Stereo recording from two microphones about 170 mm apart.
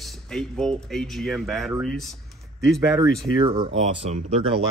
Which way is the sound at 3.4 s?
30° right (ahead or behind).